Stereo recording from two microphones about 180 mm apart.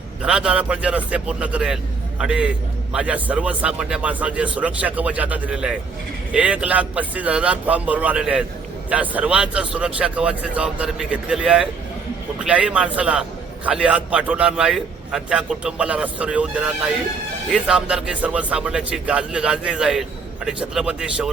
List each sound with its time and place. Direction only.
0.2 s a man's voice: 5° right (ahead or behind)